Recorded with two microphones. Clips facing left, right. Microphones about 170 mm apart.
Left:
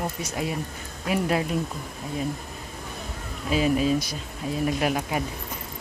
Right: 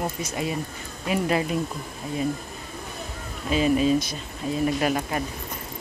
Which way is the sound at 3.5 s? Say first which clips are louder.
Right 2 dB; 5° left (ahead or behind).